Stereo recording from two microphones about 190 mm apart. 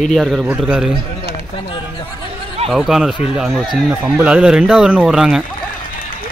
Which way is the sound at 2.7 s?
Centre (ahead or behind).